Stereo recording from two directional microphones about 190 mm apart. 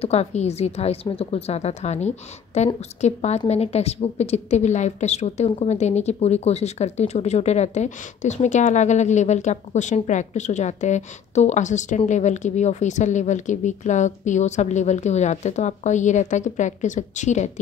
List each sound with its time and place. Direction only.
0.0 s a woman's voice: 35° left (ahead or behind)